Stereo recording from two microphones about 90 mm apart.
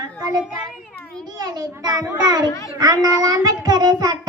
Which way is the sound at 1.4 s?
45° right (ahead or behind).